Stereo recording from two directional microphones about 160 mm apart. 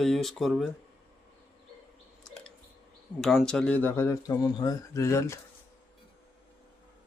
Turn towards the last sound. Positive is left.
turn(degrees=20)  # may be behind; listen again after turning